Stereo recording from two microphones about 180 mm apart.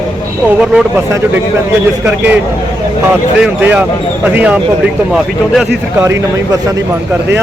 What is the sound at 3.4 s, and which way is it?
Speech, 10° right (ahead or behind).